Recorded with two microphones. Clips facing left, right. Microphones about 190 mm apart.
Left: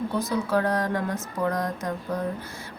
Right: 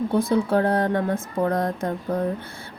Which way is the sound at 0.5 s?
30° right (ahead or behind).